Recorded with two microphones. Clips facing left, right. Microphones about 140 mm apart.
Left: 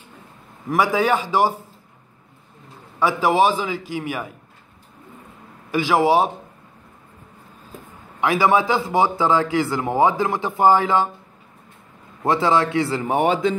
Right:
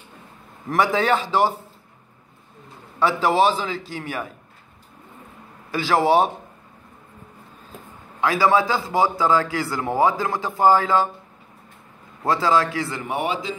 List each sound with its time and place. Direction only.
0.7 s a man's voice: 10° left (ahead or behind)
3.0 s a man's voice: 10° left (ahead or behind)
5.7 s a man's voice: 15° left (ahead or behind)
8.2 s a man's voice: 20° left (ahead or behind)
12.2 s a man's voice: 20° left (ahead or behind); by 13.6 s 50° left (ahead or behind)